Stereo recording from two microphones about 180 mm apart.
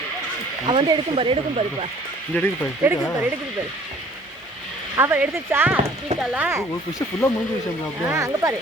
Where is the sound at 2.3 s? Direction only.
10° left (ahead or behind).